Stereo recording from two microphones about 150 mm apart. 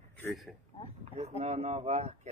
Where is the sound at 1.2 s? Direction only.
45° right (ahead or behind).